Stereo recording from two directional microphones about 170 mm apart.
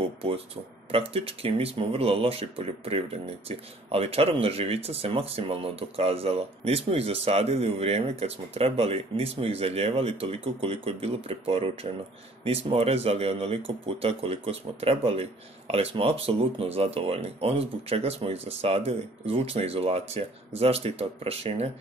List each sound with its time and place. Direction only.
0.9 s speech: 35° right (ahead or behind)